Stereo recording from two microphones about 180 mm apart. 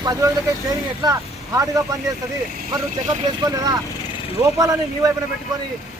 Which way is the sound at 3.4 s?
20° right (ahead or behind).